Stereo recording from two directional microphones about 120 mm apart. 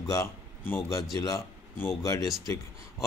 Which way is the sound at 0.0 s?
30° left (ahead or behind).